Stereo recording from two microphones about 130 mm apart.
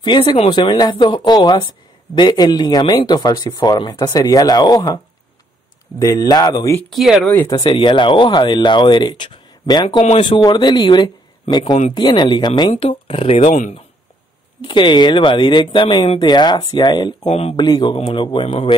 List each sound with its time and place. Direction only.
0.0 s speech: 35° left (ahead or behind)
6.9 s speech: centre (ahead or behind)
7.6 s speech: 40° left (ahead or behind)
14.6 s speech: 40° left (ahead or behind)
17.2 s speech: 50° left (ahead or behind)
17.6 s speech: 35° left (ahead or behind)
17.9 s speech: 45° left (ahead or behind)